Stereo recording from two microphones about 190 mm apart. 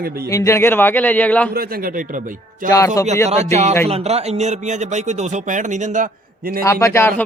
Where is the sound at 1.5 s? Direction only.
50° right (ahead or behind).